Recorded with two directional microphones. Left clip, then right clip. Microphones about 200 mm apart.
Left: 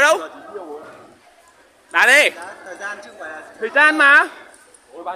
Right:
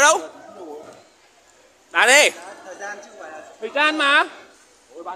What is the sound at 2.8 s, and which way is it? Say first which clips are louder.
Speech: left 3 dB; 40° left (ahead or behind).